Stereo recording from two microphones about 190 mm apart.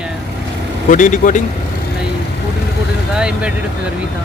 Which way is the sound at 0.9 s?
40° left (ahead or behind).